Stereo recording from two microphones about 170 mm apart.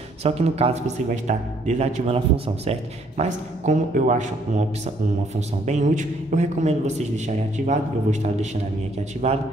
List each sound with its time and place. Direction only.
0.2 s a man's voice: 35° right (ahead or behind)